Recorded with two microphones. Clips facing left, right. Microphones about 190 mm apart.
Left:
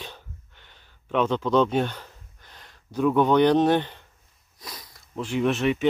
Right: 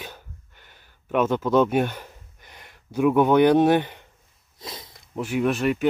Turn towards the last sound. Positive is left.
turn(degrees=0)  # may be behind; listen again after turning